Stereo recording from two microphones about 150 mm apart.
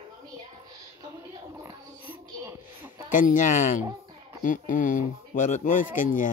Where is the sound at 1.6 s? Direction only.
20° right (ahead or behind).